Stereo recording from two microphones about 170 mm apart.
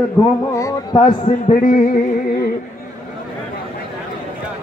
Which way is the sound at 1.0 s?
50° left (ahead or behind).